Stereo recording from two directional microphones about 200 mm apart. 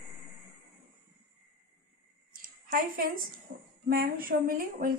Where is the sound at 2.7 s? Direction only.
45° right (ahead or behind).